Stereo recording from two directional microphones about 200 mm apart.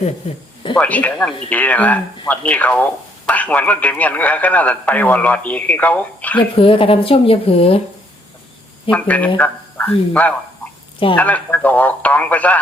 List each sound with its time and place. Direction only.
0.8 s speech: 5° left (ahead or behind)
6.6 s speech: 25° left (ahead or behind)
8.9 s speech: 5° left (ahead or behind)